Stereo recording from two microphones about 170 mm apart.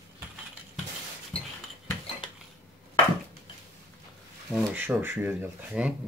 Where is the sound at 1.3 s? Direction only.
35° left (ahead or behind).